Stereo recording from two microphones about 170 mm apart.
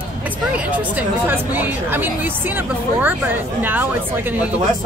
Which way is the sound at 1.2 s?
10° right (ahead or behind).